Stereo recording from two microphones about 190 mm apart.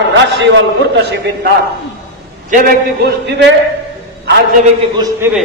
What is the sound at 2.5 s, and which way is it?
Speech, 55° right (ahead or behind).